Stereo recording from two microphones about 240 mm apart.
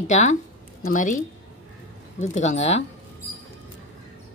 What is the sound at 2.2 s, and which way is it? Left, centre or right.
Speech, left.